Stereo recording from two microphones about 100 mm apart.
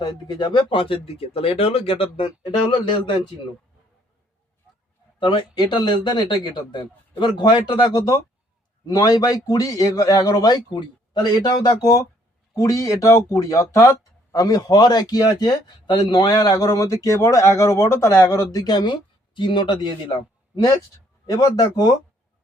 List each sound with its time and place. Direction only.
0.0 s speech: 40° left (ahead or behind); by 3.2 s 60° left (ahead or behind)
5.2 s speech: 50° left (ahead or behind)
21.2 s speech: 40° left (ahead or behind)